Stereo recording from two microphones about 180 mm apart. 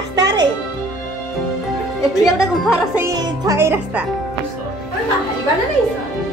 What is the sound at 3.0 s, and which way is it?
Speech, 20° right (ahead or behind).